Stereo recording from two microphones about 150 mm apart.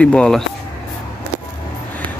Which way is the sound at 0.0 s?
5° left (ahead or behind).